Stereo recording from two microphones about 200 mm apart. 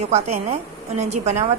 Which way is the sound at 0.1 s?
30° right (ahead or behind).